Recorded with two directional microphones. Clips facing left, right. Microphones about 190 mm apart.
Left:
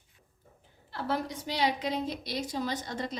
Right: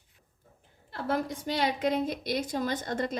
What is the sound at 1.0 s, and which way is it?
A woman's voice, 50° right (ahead or behind).